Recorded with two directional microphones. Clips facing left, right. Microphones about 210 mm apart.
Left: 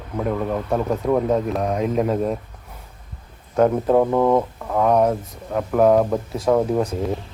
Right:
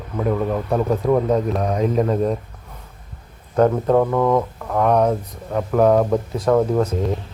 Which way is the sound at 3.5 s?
5° left (ahead or behind).